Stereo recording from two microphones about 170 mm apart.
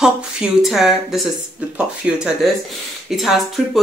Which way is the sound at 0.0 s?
Centre (ahead or behind).